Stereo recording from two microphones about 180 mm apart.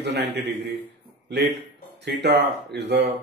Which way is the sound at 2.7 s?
70° right (ahead or behind).